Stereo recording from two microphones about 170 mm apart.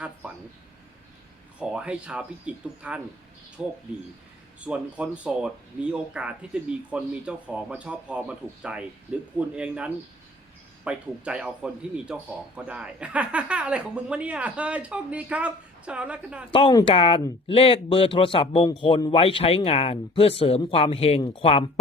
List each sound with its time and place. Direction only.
1.5 s a man's voice: 5° right (ahead or behind)
16.5 s a man's voice: 30° left (ahead or behind)